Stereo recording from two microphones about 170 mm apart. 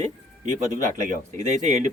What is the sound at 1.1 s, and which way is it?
Speech, 45° right (ahead or behind).